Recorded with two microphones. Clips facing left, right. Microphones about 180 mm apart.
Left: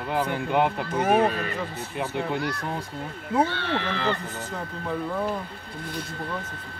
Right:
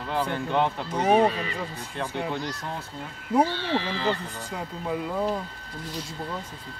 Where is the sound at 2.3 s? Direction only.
60° left (ahead or behind).